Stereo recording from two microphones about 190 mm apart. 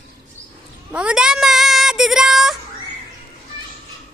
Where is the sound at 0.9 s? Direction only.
5° right (ahead or behind).